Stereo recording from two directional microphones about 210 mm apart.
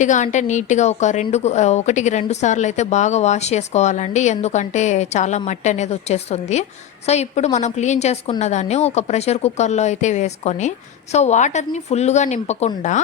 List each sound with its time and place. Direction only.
0.0 s speech: 35° left (ahead or behind)